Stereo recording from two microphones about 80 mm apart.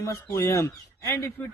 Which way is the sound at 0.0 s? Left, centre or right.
Left.